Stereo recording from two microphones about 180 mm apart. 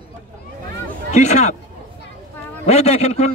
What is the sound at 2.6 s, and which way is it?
Speech, 35° left (ahead or behind).